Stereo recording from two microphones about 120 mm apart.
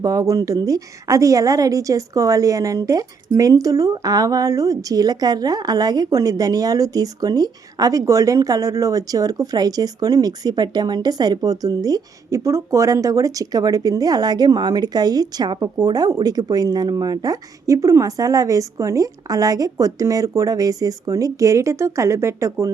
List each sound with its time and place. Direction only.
0.0 s a woman's voice: 30° right (ahead or behind)